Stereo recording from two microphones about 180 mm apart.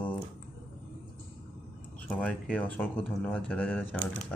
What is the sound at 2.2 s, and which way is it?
Speech, 5° left (ahead or behind).